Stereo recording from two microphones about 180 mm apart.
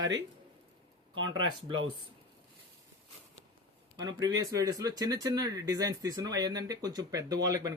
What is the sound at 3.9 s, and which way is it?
Speech, 20° right (ahead or behind).